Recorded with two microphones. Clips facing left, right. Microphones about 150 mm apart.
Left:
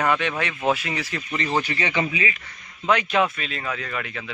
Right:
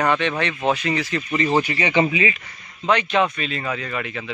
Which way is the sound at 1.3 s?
10° right (ahead or behind).